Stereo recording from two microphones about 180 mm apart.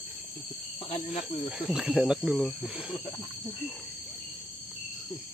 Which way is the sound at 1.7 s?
5° right (ahead or behind).